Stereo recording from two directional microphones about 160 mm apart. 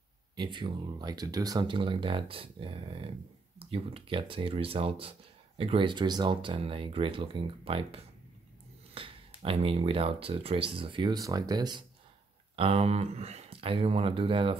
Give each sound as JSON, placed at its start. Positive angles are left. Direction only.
{"t": 0.4, "sound": "speech", "side_deg": -30}
{"t": 12.5, "sound": "speech", "side_deg": -40}